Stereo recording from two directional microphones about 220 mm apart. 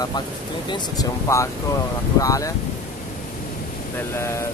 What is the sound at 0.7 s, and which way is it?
Speech, 15° left (ahead or behind).